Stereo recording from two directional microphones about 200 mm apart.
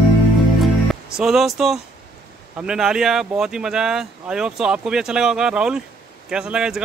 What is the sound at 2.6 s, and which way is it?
Speech, 5° right (ahead or behind).